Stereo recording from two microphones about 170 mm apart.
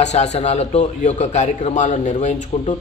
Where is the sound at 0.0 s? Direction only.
40° left (ahead or behind).